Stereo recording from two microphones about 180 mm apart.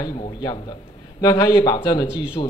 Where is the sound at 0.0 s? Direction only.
25° left (ahead or behind).